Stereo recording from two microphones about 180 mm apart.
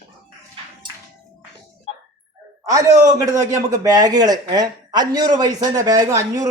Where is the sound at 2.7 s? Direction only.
20° right (ahead or behind).